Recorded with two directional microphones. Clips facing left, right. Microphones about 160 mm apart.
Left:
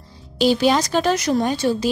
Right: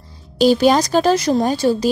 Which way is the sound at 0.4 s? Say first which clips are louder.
Right 4 dB; 40° right (ahead or behind).